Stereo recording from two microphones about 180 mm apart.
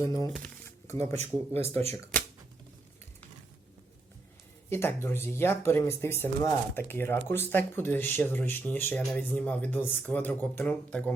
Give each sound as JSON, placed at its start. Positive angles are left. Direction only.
{"t": 0.3, "sound": "shuffling cards", "side_deg": 5}
{"t": 1.1, "sound": "speech", "side_deg": -35}
{"t": 4.7, "sound": "speech", "side_deg": 15}